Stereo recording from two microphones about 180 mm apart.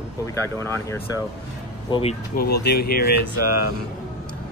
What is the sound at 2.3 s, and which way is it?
Speech, 60° left (ahead or behind).